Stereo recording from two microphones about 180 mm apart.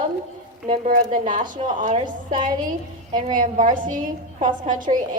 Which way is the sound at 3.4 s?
45° right (ahead or behind).